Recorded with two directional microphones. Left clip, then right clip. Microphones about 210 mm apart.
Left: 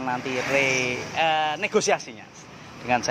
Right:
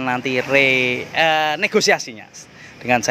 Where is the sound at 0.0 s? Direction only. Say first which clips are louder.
Right 6 dB; 50° right (ahead or behind).